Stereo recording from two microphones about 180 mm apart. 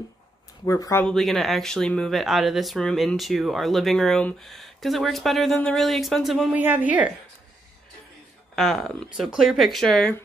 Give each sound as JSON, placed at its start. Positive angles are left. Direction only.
{"t": 0.7, "sound": "speech", "side_deg": 15}
{"t": 1.0, "sound": "a woman's voice", "side_deg": 0}
{"t": 8.5, "sound": "speech", "side_deg": 0}